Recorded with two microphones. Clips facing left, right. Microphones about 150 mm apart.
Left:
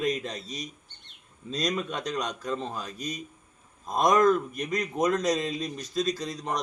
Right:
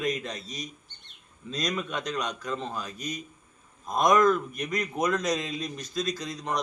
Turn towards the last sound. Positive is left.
turn(degrees=30)  # may be behind; listen again after turning